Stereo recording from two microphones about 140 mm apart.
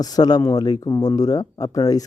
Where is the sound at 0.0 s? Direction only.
30° left (ahead or behind).